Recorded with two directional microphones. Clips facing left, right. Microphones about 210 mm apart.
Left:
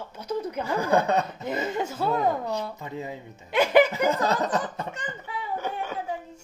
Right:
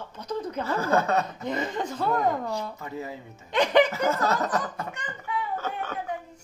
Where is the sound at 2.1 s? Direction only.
20° left (ahead or behind).